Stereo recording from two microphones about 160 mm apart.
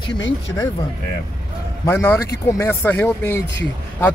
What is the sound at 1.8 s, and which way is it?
Speech, 15° left (ahead or behind).